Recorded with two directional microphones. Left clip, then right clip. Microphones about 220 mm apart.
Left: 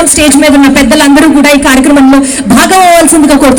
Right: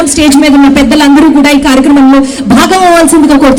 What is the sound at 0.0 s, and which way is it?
A man's voice, 30° left (ahead or behind).